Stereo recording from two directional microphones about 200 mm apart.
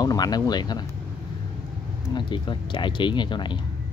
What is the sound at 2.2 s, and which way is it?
Speech, 25° left (ahead or behind).